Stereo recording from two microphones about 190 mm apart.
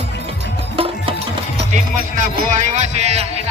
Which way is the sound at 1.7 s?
40° right (ahead or behind).